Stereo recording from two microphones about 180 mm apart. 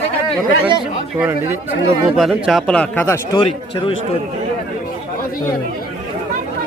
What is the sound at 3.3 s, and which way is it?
Speech, 30° left (ahead or behind).